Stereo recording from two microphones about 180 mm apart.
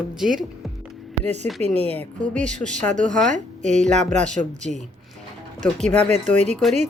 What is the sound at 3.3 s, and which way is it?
Speech, 40° right (ahead or behind).